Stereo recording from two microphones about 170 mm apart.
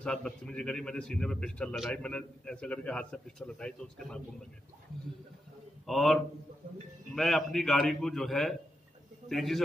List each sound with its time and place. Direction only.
0.0 s a man's voice: 5° left (ahead or behind)
5.9 s a man's voice: centre (ahead or behind)
7.2 s a man's voice: centre (ahead or behind)